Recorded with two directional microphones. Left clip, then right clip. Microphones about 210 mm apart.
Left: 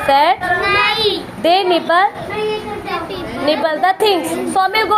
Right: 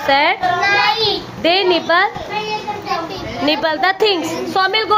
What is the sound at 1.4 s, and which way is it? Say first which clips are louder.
Speech: left 1 dB; 10° right (ahead or behind).